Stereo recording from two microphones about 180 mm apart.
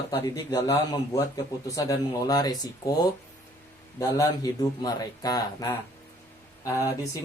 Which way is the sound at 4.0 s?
20° left (ahead or behind).